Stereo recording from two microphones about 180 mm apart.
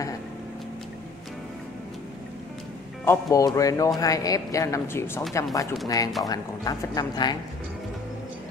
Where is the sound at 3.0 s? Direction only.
15° left (ahead or behind).